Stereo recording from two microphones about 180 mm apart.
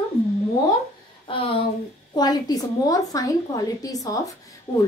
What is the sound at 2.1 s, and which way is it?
A woman's voice, 20° left (ahead or behind).